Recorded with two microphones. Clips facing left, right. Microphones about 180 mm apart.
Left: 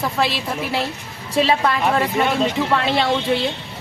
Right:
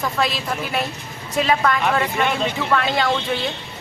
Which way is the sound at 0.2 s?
25° left (ahead or behind).